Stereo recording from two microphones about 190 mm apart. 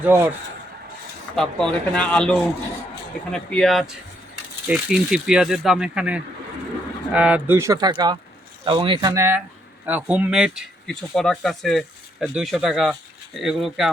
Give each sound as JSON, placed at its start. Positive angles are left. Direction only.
{"t": 0.0, "sound": "speech", "side_deg": -10}
{"t": 1.4, "sound": "speech", "side_deg": 5}